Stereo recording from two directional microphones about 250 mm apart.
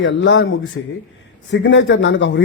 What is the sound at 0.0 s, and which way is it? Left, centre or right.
Speech, left.